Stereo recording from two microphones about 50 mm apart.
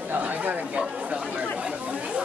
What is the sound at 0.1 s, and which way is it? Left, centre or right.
Chatter, right.